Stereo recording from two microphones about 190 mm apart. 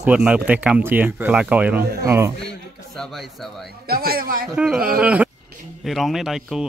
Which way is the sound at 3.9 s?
55° right (ahead or behind).